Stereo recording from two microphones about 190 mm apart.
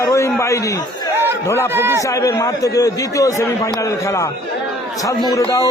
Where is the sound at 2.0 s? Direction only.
15° left (ahead or behind).